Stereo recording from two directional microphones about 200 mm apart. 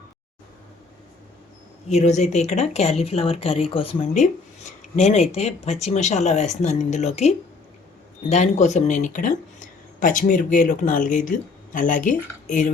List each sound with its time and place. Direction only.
1.9 s speech: 35° left (ahead or behind)